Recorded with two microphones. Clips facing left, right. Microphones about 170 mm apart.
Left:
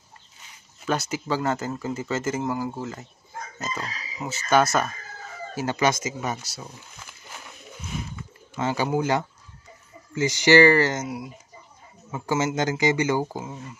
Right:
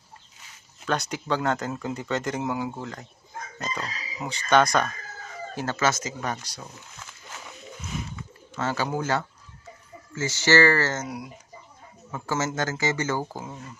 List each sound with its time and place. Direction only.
0.8 s speech: 5° left (ahead or behind)
8.5 s speech: 15° left (ahead or behind)
12.1 s speech: 10° left (ahead or behind)